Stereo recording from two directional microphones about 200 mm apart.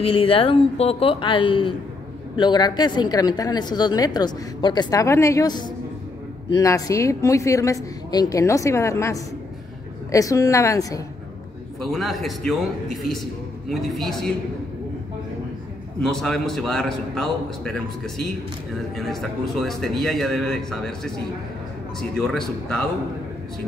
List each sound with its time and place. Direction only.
0.0 s a woman's voice: 25° left (ahead or behind)
11.8 s a man's voice: centre (ahead or behind)
16.0 s a man's voice: 5° left (ahead or behind)
22.1 s a man's voice: centre (ahead or behind)